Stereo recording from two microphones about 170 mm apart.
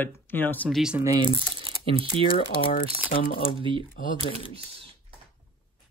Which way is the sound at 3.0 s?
60° left (ahead or behind).